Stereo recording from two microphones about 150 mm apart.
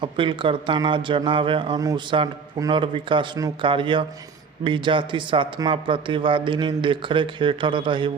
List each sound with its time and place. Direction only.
0.0 s speech: 35° right (ahead or behind)